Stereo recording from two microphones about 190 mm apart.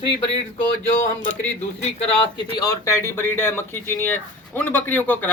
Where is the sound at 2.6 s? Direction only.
15° left (ahead or behind).